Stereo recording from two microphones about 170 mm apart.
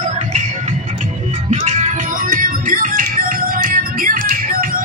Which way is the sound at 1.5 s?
40° right (ahead or behind).